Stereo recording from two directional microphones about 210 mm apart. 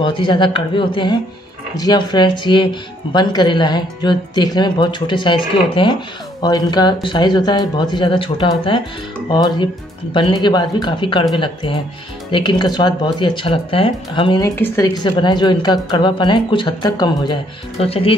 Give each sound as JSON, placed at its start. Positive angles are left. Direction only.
{"t": 0.0, "sound": "speech", "side_deg": 25}